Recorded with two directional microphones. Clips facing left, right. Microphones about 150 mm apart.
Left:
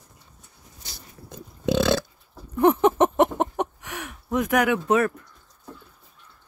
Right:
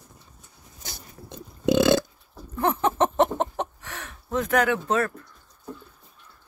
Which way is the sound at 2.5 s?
15° left (ahead or behind).